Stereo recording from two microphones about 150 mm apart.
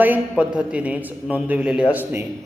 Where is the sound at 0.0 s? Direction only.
10° right (ahead or behind).